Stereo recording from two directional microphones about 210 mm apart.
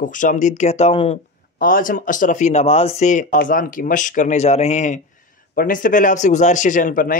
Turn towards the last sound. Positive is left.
turn(degrees=40)  # may be behind; listen again after turning